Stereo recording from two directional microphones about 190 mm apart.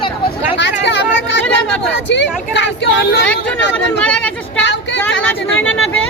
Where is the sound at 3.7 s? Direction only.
5° left (ahead or behind).